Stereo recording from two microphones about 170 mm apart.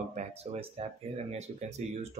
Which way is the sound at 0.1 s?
40° right (ahead or behind).